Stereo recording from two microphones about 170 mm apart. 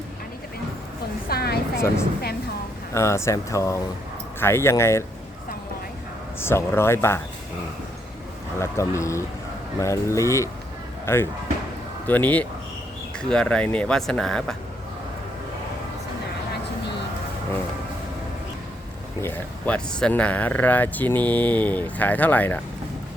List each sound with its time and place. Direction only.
1.3 s a sound: 65° left (ahead or behind)
2.9 s speech: 15° left (ahead or behind)
6.4 s speech: 15° left (ahead or behind)
8.5 s speech: 15° left (ahead or behind)
19.2 s speech: 10° left (ahead or behind)